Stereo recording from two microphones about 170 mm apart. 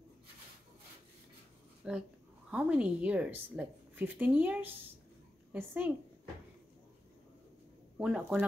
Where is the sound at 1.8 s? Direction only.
5° right (ahead or behind).